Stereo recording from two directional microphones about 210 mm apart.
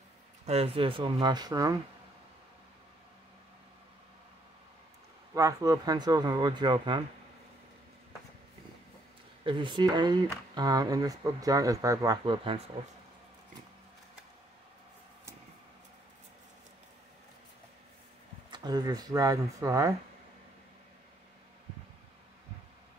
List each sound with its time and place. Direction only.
0.5 s speech: 30° right (ahead or behind)
5.3 s speech: 15° right (ahead or behind)
9.4 s speech: 25° right (ahead or behind)
18.5 s speech: 20° right (ahead or behind)